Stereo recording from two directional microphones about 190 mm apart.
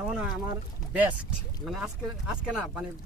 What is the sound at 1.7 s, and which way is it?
Speech, 5° right (ahead or behind).